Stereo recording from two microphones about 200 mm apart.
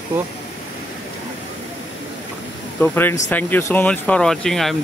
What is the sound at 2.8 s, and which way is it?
Speech, 10° left (ahead or behind).